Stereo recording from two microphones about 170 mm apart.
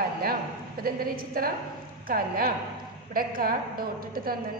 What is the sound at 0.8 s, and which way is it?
A woman's voice, 60° right (ahead or behind).